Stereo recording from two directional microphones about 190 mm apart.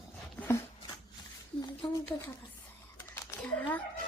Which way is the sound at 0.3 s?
15° left (ahead or behind).